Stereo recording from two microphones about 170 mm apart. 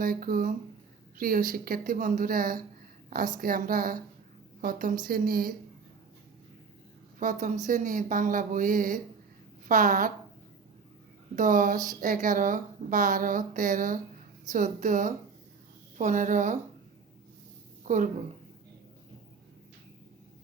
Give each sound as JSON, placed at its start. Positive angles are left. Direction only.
{"t": 0.0, "sound": "speech", "side_deg": -55}
{"t": 7.2, "sound": "speech", "side_deg": -45}
{"t": 11.3, "sound": "speech", "side_deg": -45}
{"t": 17.8, "sound": "a woman's voice", "side_deg": -50}